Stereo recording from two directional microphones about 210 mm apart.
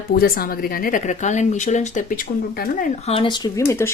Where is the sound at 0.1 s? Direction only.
45° left (ahead or behind).